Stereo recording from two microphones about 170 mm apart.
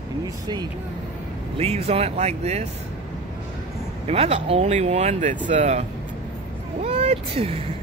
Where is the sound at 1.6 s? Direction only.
35° right (ahead or behind).